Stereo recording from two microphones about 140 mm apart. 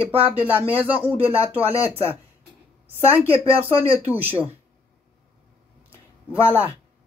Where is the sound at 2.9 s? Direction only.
15° right (ahead or behind).